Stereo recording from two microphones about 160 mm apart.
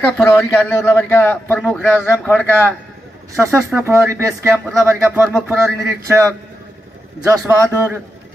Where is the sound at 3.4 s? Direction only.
15° right (ahead or behind).